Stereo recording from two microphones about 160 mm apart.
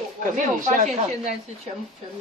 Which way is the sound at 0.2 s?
55° right (ahead or behind).